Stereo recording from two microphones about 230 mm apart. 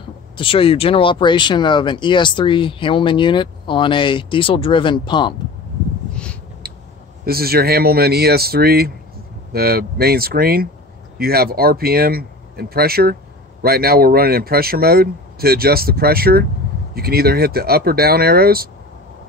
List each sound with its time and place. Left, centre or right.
0.4 s speech: left
7.2 s speech: right